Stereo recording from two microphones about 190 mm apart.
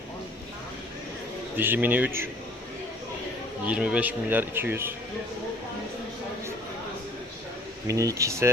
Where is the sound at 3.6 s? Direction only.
5° right (ahead or behind).